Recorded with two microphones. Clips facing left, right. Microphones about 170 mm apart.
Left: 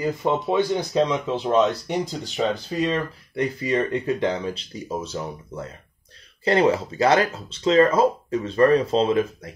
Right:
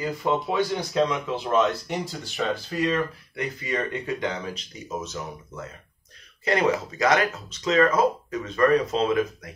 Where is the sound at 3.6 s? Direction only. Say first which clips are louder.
Left 5 dB; 30° left (ahead or behind).